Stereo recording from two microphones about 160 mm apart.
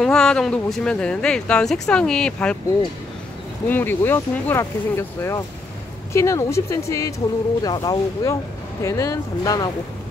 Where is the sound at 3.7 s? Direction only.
10° left (ahead or behind).